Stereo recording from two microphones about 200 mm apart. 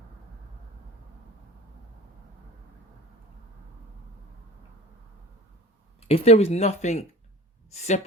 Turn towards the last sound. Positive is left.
turn(degrees=35)  # may be behind; listen again after turning